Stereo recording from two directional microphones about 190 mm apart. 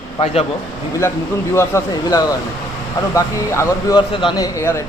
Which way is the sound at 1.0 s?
15° left (ahead or behind).